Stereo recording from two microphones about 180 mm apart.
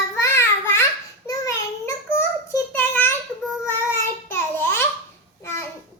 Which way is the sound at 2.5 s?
10° left (ahead or behind).